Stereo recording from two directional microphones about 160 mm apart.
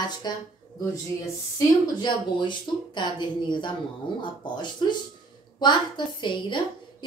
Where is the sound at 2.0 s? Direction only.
30° left (ahead or behind).